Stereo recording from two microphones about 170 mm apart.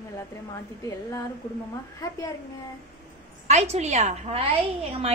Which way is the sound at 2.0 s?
20° left (ahead or behind).